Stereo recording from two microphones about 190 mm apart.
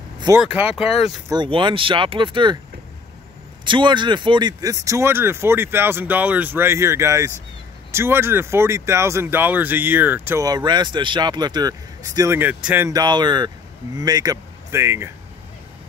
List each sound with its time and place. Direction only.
0.3 s speech: 20° right (ahead or behind)
3.6 s speech: 25° right (ahead or behind)
12.2 s speech: 10° right (ahead or behind)